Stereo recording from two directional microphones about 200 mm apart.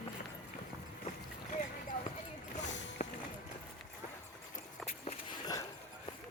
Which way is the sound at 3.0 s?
35° left (ahead or behind).